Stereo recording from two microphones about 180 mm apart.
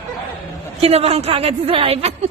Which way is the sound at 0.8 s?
35° right (ahead or behind).